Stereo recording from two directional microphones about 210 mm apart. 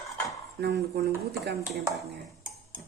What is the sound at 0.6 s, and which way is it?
Speech, 50° right (ahead or behind).